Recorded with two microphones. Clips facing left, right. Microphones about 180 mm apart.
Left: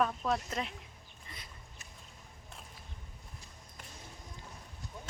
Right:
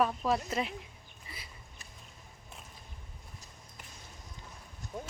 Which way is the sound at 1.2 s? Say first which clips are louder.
Right 2 dB; 5° right (ahead or behind).